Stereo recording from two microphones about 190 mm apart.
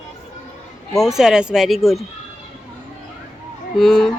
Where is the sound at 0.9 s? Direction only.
Centre (ahead or behind).